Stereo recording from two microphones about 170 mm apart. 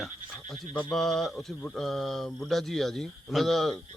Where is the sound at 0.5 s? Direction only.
5° left (ahead or behind).